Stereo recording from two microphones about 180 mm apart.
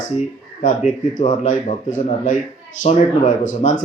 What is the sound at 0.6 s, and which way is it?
Speech, 45° left (ahead or behind).